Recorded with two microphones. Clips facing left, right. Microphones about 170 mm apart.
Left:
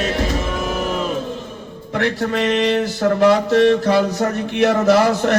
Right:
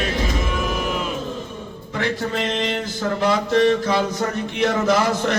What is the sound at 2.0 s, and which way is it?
Music, 65° left (ahead or behind).